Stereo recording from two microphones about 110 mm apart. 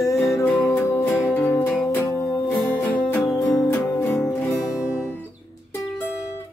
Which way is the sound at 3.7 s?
20° left (ahead or behind).